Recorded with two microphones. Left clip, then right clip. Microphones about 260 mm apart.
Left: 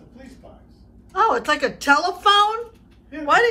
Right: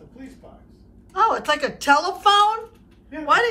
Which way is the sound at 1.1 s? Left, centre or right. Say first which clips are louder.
Left 1 dB; centre.